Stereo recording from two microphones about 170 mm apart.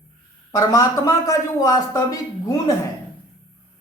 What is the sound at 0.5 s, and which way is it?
Speech, 20° left (ahead or behind).